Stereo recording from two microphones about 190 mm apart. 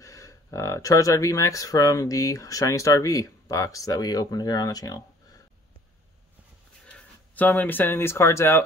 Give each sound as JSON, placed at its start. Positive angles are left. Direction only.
{"t": 0.0, "sound": "speech", "side_deg": 15}
{"t": 6.9, "sound": "speech", "side_deg": 10}